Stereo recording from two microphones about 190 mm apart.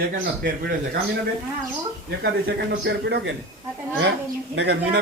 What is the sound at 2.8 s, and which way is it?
Speech, 65° right (ahead or behind).